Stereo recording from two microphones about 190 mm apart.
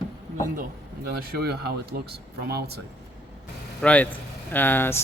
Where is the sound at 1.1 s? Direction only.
55° right (ahead or behind).